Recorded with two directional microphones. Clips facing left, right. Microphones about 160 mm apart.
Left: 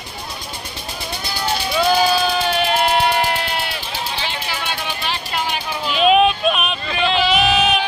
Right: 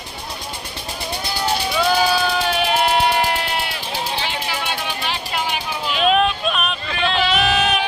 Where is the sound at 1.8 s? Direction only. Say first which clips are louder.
Left 3 dB; 20° left (ahead or behind).